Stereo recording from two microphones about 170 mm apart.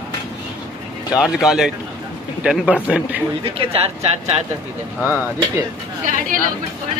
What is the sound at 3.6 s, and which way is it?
Speech, 35° right (ahead or behind).